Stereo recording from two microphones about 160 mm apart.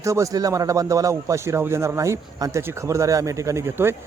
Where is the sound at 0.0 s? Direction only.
20° right (ahead or behind).